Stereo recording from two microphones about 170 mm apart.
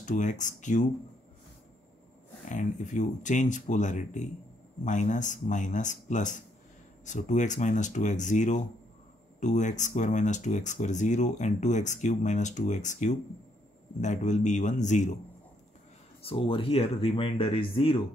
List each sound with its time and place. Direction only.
0.0 s speech: 45° left (ahead or behind)
2.4 s speech: 50° left (ahead or behind)
16.3 s speech: 30° left (ahead or behind)